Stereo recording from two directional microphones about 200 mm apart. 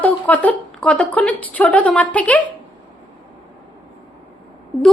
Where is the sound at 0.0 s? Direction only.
5° left (ahead or behind).